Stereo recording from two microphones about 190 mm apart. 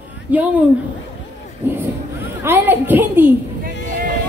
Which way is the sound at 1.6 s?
10° right (ahead or behind).